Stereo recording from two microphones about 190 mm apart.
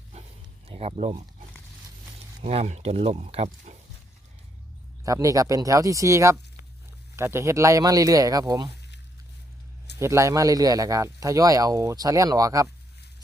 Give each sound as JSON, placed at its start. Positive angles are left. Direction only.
{"t": 0.7, "sound": "speech", "side_deg": -35}
{"t": 2.4, "sound": "speech", "side_deg": -30}
{"t": 5.0, "sound": "a man's voice", "side_deg": -15}
{"t": 10.0, "sound": "a man's voice", "side_deg": -15}